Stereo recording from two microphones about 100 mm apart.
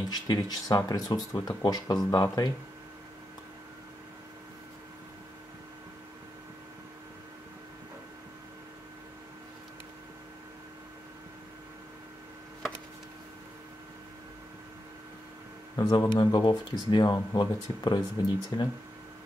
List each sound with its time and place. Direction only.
0.1 s speech: 40° left (ahead or behind)
15.7 s speech: 40° left (ahead or behind)